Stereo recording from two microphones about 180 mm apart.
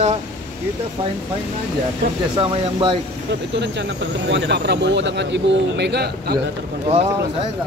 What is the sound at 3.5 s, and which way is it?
Speech, 75° right (ahead or behind).